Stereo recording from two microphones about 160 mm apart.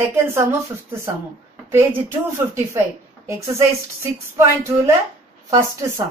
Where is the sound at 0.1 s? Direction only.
15° right (ahead or behind).